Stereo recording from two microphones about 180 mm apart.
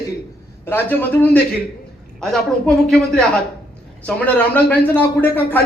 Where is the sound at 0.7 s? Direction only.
10° left (ahead or behind).